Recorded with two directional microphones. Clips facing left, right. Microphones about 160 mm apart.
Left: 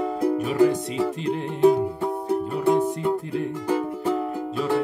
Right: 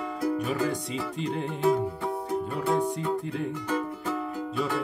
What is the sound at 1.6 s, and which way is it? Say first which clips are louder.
Music: left 7 dB; 25° left (ahead or behind).